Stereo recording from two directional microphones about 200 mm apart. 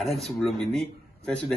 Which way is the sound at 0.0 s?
Centre (ahead or behind).